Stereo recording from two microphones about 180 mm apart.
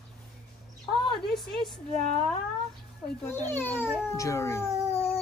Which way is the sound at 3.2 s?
10° left (ahead or behind).